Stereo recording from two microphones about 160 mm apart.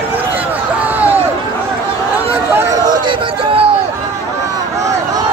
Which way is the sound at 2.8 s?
30° right (ahead or behind).